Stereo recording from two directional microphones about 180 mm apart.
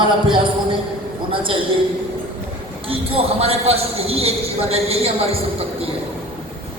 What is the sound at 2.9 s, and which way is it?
A man's voice, 30° right (ahead or behind).